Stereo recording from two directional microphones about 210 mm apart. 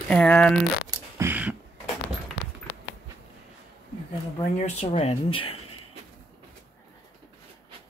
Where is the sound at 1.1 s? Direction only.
10° right (ahead or behind).